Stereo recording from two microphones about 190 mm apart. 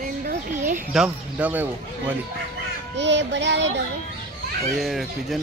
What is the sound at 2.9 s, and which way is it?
Speech, 70° right (ahead or behind).